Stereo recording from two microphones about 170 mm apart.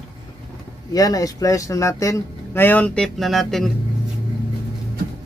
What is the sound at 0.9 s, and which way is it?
Speech, 20° left (ahead or behind).